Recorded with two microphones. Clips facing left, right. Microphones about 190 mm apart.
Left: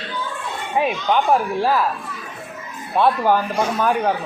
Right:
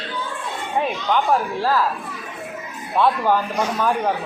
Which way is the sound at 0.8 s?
15° left (ahead or behind).